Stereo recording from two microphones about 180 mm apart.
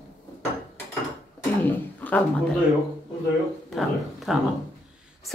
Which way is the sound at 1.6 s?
10° left (ahead or behind).